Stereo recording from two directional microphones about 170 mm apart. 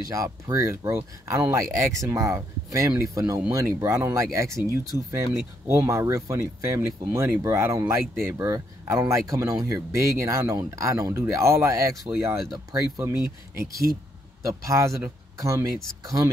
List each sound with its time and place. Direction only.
0.1 s speech: 20° right (ahead or behind)
14.5 s speech: 15° right (ahead or behind)